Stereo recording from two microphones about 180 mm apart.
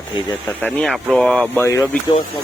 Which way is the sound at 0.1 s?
20° left (ahead or behind).